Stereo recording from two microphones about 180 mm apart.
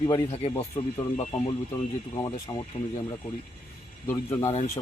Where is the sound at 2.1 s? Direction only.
20° left (ahead or behind).